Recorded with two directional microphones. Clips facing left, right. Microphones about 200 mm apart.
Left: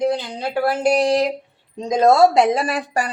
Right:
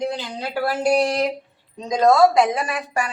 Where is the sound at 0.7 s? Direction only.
20° left (ahead or behind).